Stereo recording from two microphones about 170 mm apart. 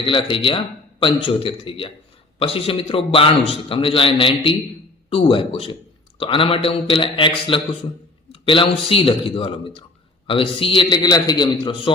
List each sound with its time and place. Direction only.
0.0 s a man's voice: 30° left (ahead or behind)